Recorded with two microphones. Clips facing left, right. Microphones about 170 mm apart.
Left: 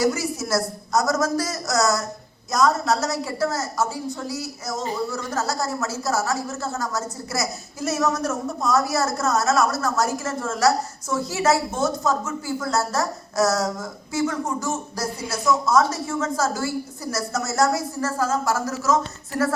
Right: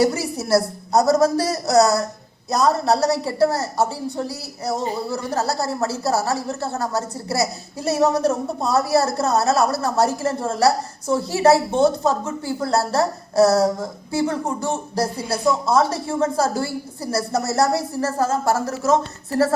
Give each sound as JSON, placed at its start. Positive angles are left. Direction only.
{"t": 0.0, "sound": "speech", "side_deg": -30}